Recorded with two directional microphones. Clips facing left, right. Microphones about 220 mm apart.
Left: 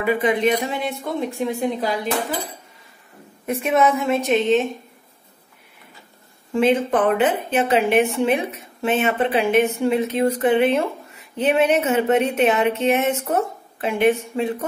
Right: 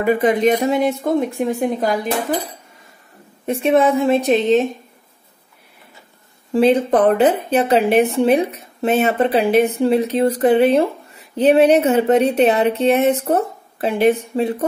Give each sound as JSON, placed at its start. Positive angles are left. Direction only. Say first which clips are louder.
{"t": 0.0, "sound": "speech", "louder": "right 4 dB", "side_deg": -45}
{"t": 3.4, "sound": "a woman's voice", "louder": "right 4 dB", "side_deg": -30}
{"t": 6.5, "sound": "a woman's voice", "louder": "right 4 dB", "side_deg": -35}